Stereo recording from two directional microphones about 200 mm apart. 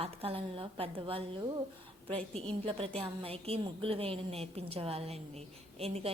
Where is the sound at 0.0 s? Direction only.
30° right (ahead or behind).